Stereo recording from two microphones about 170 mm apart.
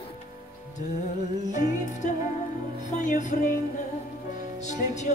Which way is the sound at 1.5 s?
45° left (ahead or behind).